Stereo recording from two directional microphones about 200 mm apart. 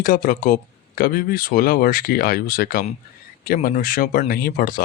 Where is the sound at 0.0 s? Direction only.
45° left (ahead or behind).